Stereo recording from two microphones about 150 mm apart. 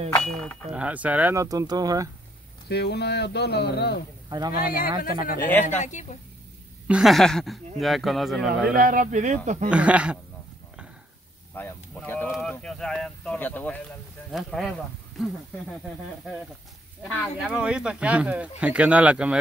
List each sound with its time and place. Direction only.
0.1 s speech: 5° left (ahead or behind)
0.7 s speech: 10° right (ahead or behind)
1.3 s speech: 20° right (ahead or behind)
2.7 s speech: 90° left
4.3 s speech: 25° right (ahead or behind)
5.4 s speech: 10° left (ahead or behind)
5.8 s a woman's voice: 55° left (ahead or behind)
6.9 s speech: centre (ahead or behind)
8.7 s speech: 65° right (ahead or behind)
9.7 s speech: 10° right (ahead or behind)
11.5 s speech: 10° left (ahead or behind)
17.1 s speech: centre (ahead or behind)